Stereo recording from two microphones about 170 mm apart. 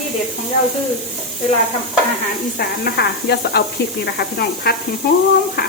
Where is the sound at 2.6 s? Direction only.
70° left (ahead or behind).